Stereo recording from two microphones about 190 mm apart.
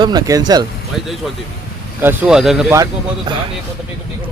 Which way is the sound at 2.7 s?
20° right (ahead or behind).